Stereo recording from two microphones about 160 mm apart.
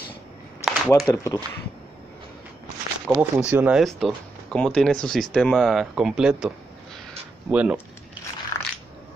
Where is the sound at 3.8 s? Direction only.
Centre (ahead or behind).